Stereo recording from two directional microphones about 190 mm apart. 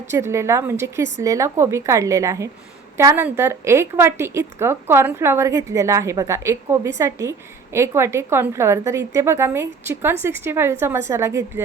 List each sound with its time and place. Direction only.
0.1 s a woman's voice: 15° right (ahead or behind)